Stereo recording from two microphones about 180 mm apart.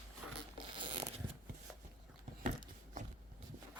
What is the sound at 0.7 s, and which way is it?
Zipper, 25° right (ahead or behind).